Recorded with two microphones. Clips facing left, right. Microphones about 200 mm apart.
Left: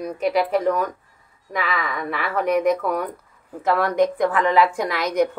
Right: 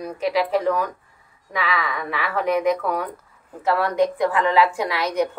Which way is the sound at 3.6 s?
45° left (ahead or behind).